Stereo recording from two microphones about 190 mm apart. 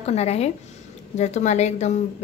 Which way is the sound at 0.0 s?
35° left (ahead or behind).